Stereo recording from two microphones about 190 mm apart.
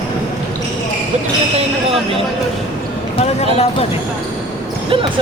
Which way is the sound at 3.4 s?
35° left (ahead or behind).